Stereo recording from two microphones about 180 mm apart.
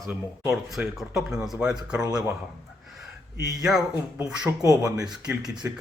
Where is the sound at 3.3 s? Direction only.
20° right (ahead or behind).